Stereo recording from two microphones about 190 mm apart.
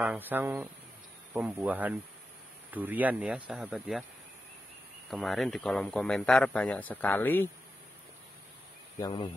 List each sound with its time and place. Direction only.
0.0 s speech: 10° right (ahead or behind)
5.1 s speech: centre (ahead or behind)
9.0 s speech: 25° left (ahead or behind)